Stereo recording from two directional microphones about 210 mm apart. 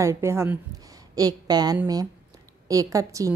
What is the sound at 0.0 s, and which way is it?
A woman's voice, 15° right (ahead or behind).